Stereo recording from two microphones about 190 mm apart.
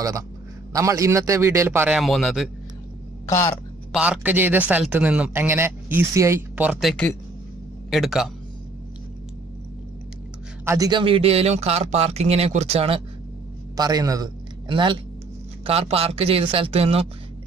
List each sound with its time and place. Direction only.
0.7 s speech: 15° right (ahead or behind); by 2.5 s centre (ahead or behind)
3.3 s speech: 15° left (ahead or behind)
3.9 s a man's voice: 5° right (ahead or behind)
10.6 s a man's voice: 15° right (ahead or behind); by 13.0 s 30° right (ahead or behind)
13.7 s a man's voice: 20° right (ahead or behind)